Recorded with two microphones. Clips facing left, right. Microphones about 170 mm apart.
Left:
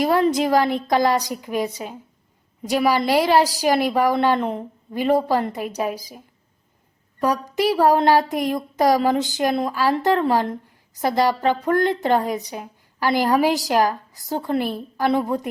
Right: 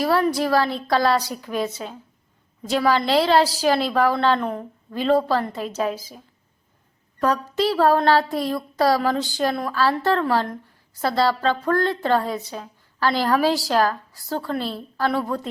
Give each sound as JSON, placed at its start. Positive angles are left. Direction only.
{"t": 0.0, "sound": "a woman's voice", "side_deg": 20}